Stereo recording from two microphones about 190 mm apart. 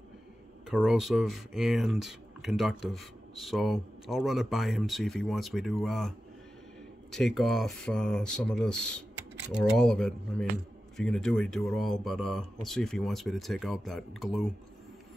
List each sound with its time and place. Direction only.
0.7 s speech: centre (ahead or behind)